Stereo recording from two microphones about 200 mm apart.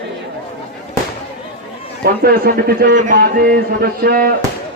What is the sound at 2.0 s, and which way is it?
Speech, 45° right (ahead or behind).